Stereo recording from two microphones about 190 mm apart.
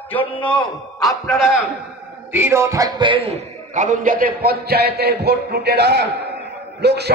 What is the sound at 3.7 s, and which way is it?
A man's voice, 45° right (ahead or behind).